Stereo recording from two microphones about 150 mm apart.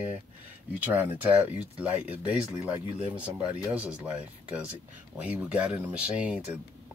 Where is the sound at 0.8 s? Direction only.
10° right (ahead or behind).